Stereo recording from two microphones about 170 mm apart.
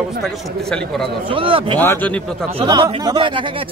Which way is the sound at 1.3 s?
30° right (ahead or behind).